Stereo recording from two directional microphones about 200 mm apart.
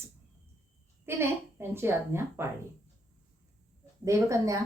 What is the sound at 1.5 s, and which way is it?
Speech, 10° right (ahead or behind).